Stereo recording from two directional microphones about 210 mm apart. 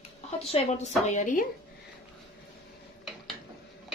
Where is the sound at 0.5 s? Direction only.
30° left (ahead or behind).